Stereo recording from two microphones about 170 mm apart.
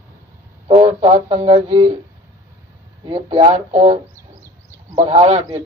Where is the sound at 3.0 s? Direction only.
30° right (ahead or behind).